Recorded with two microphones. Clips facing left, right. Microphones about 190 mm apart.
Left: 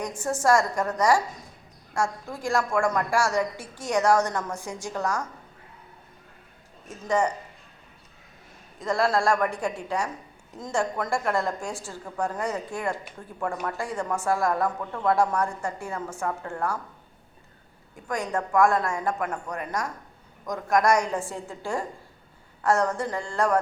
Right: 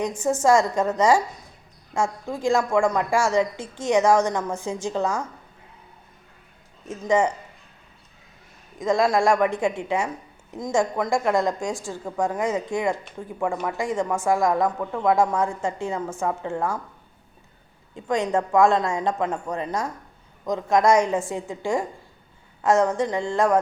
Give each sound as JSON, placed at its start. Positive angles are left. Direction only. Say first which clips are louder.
{"t": 0.4, "sound": "a woman's voice", "louder": "right 3 dB", "side_deg": -20}
{"t": 7.0, "sound": "a woman's voice", "louder": "right 4 dB", "side_deg": -20}
{"t": 8.8, "sound": "a woman's voice", "louder": "right 4 dB", "side_deg": -15}
{"t": 17.9, "sound": "a woman's voice", "louder": "right 6 dB", "side_deg": -25}